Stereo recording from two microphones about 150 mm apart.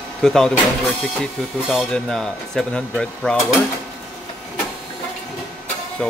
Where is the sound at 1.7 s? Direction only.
Centre (ahead or behind).